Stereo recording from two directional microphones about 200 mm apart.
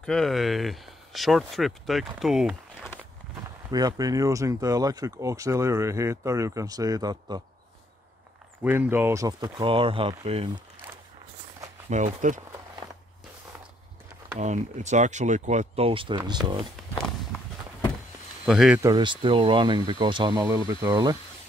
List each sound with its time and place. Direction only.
0.0 s speech: 5° left (ahead or behind)
3.7 s speech: 20° right (ahead or behind)
8.6 s speech: 10° right (ahead or behind); by 10.5 s 30° right (ahead or behind)
11.9 s speech: 40° right (ahead or behind)
14.4 s speech: 35° right (ahead or behind)
18.4 s speech: centre (ahead or behind)
18.8 s speech: 20° right (ahead or behind)